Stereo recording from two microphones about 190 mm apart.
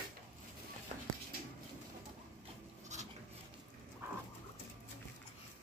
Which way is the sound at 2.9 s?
40° right (ahead or behind).